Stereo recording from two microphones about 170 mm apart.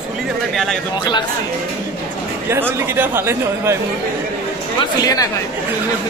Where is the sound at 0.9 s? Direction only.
25° left (ahead or behind).